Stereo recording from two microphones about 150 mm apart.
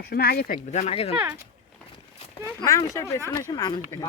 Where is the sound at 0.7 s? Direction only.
45° left (ahead or behind).